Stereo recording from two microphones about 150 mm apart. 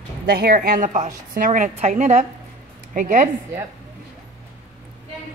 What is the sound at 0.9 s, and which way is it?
A woman's voice, 55° right (ahead or behind).